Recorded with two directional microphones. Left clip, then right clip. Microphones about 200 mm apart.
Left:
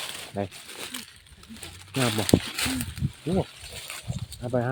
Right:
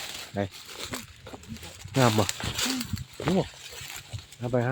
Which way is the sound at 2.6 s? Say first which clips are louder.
Even; 35° left (ahead or behind).